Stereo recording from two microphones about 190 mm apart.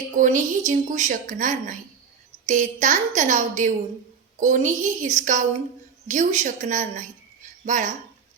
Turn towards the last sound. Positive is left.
turn(degrees=-40)  # may be behind; listen again after turning